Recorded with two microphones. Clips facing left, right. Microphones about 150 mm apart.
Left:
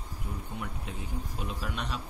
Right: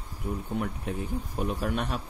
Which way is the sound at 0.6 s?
50° right (ahead or behind).